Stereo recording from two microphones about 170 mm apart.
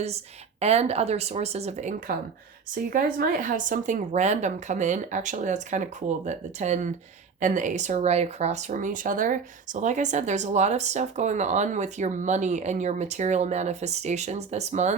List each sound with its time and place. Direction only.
0.6 s speech: 40° right (ahead or behind)
2.7 s speech: 55° right (ahead or behind)